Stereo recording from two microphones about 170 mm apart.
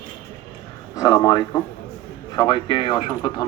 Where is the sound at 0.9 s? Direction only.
20° left (ahead or behind).